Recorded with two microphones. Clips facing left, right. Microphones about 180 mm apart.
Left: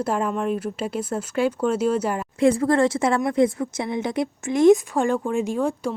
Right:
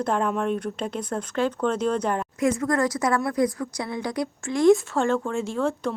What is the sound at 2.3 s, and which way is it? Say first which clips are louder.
Speech: left 6 dB; 30° left (ahead or behind).